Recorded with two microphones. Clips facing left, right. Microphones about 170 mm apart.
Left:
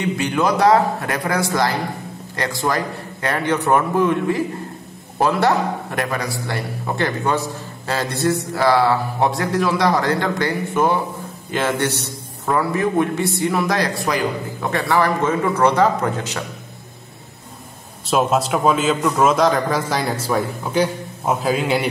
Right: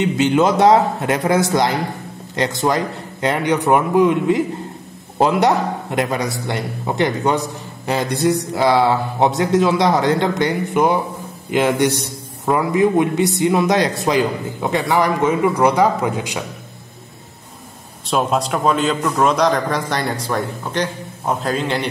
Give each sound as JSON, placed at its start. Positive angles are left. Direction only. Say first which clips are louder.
{"t": 0.0, "sound": "a man's voice", "louder": "right 4 dB", "side_deg": -25}
{"t": 18.0, "sound": "a man's voice", "louder": "left 1 dB", "side_deg": 0}